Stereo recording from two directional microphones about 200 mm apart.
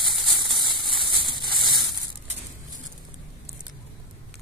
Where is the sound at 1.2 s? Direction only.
20° right (ahead or behind).